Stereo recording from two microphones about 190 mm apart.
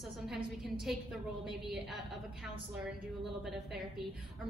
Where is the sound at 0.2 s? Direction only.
Centre (ahead or behind).